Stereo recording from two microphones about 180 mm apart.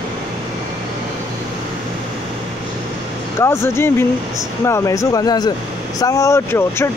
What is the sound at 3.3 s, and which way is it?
Speech, 15° left (ahead or behind).